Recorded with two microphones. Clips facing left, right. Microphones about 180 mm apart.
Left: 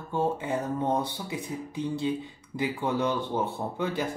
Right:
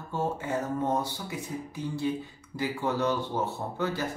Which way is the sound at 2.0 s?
20° left (ahead or behind).